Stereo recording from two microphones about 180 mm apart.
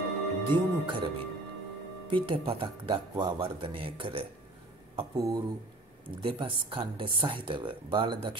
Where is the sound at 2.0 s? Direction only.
30° right (ahead or behind).